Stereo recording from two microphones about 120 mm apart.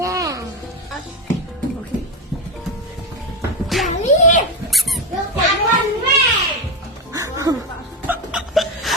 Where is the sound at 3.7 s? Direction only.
Centre (ahead or behind).